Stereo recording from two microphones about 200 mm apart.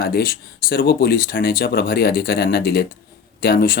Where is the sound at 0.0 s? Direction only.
45° left (ahead or behind).